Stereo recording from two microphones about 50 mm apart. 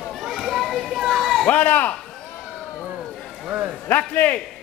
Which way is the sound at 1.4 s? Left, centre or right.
Left.